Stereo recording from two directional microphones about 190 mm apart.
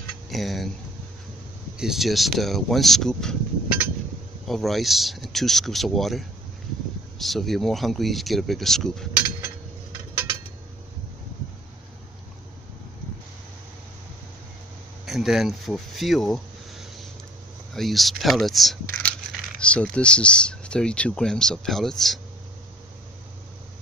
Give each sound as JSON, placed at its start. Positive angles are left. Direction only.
{"t": 0.3, "sound": "speech", "side_deg": 0}
{"t": 1.8, "sound": "speech", "side_deg": 0}
{"t": 4.5, "sound": "speech", "side_deg": 0}
{"t": 15.0, "sound": "speech", "side_deg": 0}